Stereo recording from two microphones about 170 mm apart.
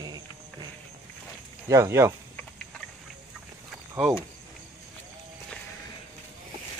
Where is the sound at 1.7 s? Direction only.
15° right (ahead or behind).